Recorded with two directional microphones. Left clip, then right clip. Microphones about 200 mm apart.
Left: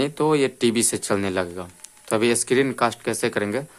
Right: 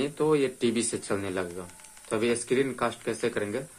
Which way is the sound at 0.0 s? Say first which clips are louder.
Left 5 dB; 45° left (ahead or behind).